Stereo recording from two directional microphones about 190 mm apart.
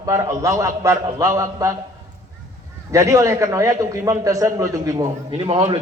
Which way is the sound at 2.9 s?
15° right (ahead or behind).